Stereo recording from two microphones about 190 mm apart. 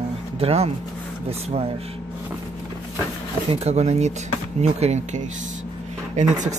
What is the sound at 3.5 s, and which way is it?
Speech, 35° right (ahead or behind).